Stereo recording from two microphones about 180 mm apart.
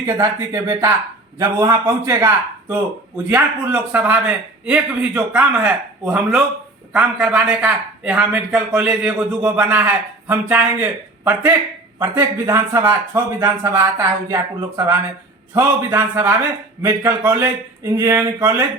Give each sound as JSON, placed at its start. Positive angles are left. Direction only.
{"t": 0.2, "sound": "a man's voice", "side_deg": -15}